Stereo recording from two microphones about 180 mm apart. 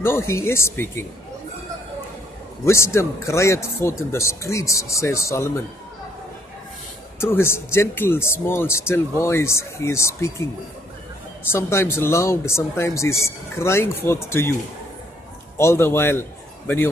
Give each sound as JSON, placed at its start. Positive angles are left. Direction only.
{"t": 0.0, "sound": "speech", "side_deg": 15}
{"t": 2.6, "sound": "speech", "side_deg": 15}
{"t": 7.2, "sound": "speech", "side_deg": 15}
{"t": 11.5, "sound": "speech", "side_deg": 15}
{"t": 15.5, "sound": "a man's voice", "side_deg": 15}